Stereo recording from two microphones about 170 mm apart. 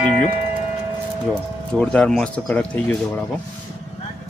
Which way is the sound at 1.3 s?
5° left (ahead or behind).